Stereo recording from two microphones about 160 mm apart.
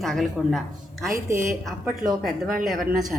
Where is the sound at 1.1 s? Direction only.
20° right (ahead or behind).